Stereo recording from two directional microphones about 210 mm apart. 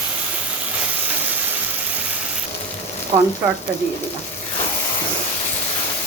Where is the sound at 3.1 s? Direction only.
20° right (ahead or behind).